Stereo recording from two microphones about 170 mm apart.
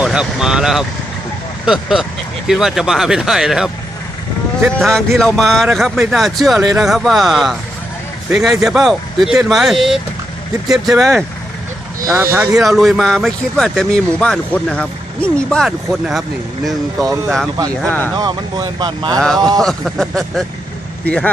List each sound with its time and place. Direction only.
0.0 s speech: 5° right (ahead or behind)
12.1 s speech: 15° right (ahead or behind)
12.5 s speech: centre (ahead or behind)
17.7 s speech: 10° left (ahead or behind)
18.2 s speech: 25° right (ahead or behind)
19.6 s a man's voice: centre (ahead or behind)